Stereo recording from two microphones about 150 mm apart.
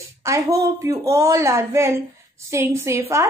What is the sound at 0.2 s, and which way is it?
A woman's voice, 20° right (ahead or behind).